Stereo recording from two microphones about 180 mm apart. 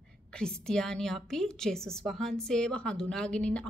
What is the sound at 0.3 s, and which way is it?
A woman's voice, 5° left (ahead or behind).